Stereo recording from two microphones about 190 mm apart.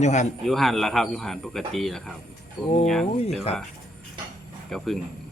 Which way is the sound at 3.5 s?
35° left (ahead or behind).